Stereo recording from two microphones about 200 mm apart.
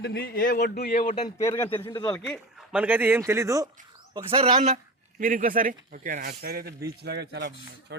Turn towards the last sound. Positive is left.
turn(degrees=-60)  # may be behind; listen again after turning